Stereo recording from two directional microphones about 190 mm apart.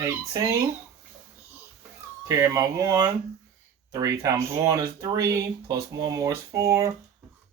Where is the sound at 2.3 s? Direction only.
15° right (ahead or behind).